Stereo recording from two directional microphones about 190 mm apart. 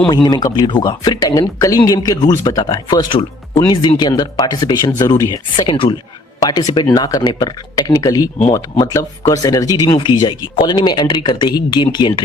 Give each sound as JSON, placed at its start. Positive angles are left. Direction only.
{"t": 0.1, "sound": "speech", "side_deg": 20}